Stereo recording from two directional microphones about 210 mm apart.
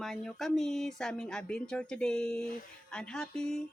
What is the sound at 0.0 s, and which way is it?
Speech, centre (ahead or behind).